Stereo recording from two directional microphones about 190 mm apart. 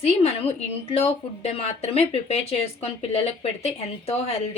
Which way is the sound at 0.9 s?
30° left (ahead or behind).